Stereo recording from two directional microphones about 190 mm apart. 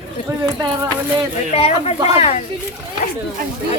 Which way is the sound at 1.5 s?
35° left (ahead or behind).